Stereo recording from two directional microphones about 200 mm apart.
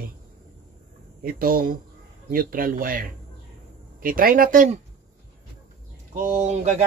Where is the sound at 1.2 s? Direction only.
45° right (ahead or behind).